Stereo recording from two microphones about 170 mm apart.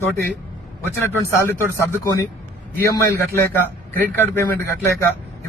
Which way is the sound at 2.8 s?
20° left (ahead or behind).